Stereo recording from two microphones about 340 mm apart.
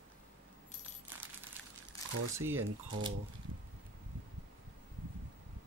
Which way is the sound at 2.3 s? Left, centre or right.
Centre.